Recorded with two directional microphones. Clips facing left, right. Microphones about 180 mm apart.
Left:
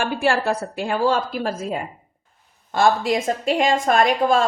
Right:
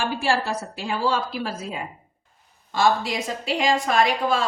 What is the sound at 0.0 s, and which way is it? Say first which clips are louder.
A woman's voice: left 3 dB; 55° left (ahead or behind).